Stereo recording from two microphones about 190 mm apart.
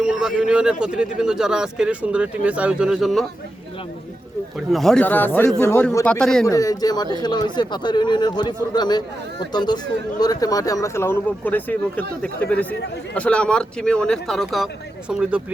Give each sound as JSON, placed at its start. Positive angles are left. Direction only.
{"t": 0.0, "sound": "a man's voice", "side_deg": -5}
{"t": 4.7, "sound": "a man's voice", "side_deg": 0}
{"t": 6.5, "sound": "a man's voice", "side_deg": 20}